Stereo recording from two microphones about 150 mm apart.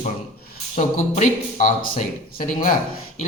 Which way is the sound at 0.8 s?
55° left (ahead or behind).